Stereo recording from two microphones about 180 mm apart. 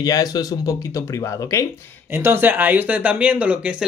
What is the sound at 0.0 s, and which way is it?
Speech, 20° left (ahead or behind).